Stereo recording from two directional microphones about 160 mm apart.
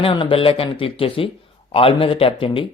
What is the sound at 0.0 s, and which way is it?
Speech, 30° left (ahead or behind).